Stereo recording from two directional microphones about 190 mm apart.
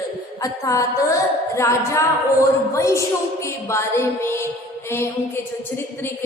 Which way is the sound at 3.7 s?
15° left (ahead or behind).